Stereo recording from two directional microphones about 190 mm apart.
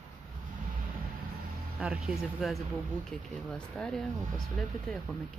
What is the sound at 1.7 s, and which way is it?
Speech, 5° right (ahead or behind).